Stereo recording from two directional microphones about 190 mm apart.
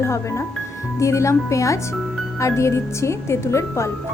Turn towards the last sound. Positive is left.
turn(degrees=15)  # may be behind; listen again after turning